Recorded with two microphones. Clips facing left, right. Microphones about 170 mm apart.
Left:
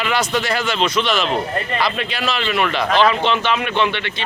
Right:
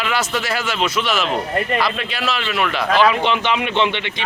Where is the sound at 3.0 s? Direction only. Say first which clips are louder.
Even; 10° right (ahead or behind).